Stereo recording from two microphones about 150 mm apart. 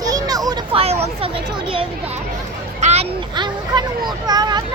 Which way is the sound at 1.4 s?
35° right (ahead or behind).